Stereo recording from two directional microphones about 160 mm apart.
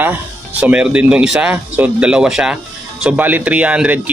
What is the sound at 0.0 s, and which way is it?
Speech, 10° right (ahead or behind).